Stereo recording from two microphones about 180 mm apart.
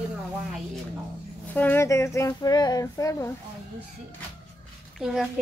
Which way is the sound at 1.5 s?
10° left (ahead or behind).